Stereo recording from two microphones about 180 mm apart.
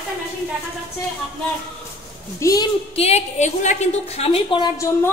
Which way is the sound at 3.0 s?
40° left (ahead or behind).